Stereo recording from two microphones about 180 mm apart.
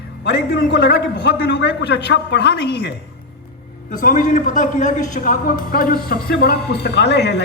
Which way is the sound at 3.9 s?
50° left (ahead or behind).